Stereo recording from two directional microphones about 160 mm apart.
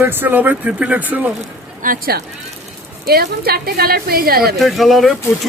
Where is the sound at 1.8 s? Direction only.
65° right (ahead or behind).